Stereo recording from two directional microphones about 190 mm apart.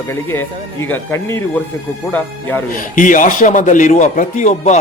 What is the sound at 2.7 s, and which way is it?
A man's voice, 45° left (ahead or behind).